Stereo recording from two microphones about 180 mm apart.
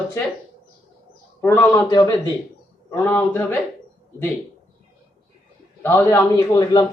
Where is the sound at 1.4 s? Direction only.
10° left (ahead or behind).